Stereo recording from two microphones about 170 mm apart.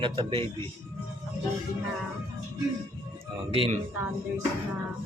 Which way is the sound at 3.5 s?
35° right (ahead or behind).